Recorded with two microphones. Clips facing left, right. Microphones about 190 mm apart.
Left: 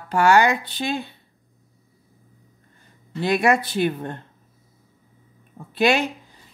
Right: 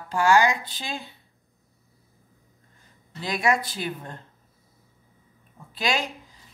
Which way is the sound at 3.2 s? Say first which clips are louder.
Left 5 dB; 65° left (ahead or behind).